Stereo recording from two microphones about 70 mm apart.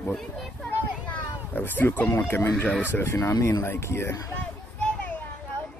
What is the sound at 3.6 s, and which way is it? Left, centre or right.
Speech, left.